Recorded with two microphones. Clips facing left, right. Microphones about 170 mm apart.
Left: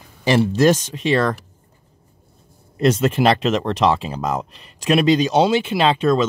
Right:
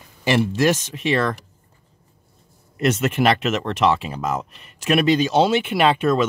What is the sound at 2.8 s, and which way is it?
Speech, 30° left (ahead or behind).